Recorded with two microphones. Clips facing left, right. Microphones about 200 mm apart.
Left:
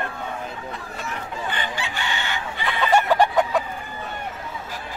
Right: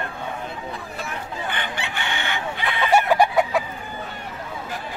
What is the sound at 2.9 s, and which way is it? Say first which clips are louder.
Chicken: right 1 dB; 10° right (ahead or behind).